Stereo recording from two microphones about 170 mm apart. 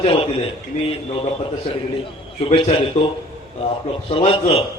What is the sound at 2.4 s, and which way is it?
Speech, 35° left (ahead or behind).